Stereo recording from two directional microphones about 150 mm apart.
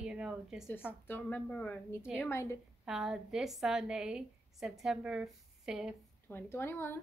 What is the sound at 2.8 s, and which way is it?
Speech, 5° right (ahead or behind).